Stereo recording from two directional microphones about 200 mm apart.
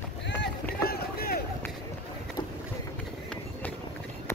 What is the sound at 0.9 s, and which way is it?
Boat, 50° left (ahead or behind).